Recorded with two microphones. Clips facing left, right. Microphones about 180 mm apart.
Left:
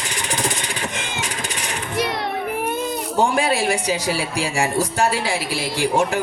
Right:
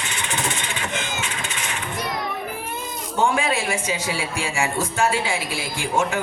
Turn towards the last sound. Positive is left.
turn(degrees=40)  # may be behind; listen again after turning